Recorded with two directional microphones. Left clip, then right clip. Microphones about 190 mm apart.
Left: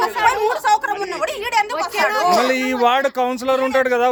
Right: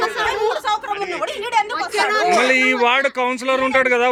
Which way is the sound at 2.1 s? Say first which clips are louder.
Right 2 dB; 25° left (ahead or behind).